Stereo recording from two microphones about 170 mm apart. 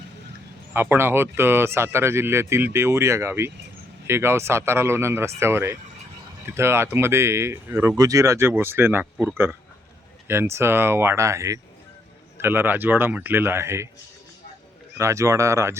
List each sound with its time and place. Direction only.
0.7 s speech: 15° right (ahead or behind)
14.9 s speech: 15° right (ahead or behind)